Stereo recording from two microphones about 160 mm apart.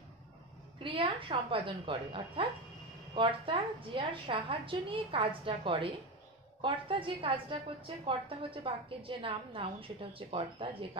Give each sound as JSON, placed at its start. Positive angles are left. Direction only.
{"t": 0.8, "sound": "a woman's voice", "side_deg": -30}